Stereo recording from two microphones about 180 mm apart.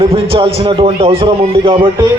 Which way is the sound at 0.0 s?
30° right (ahead or behind).